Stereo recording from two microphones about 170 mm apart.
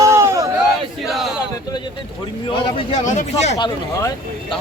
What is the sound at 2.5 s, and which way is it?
Speech, 30° left (ahead or behind).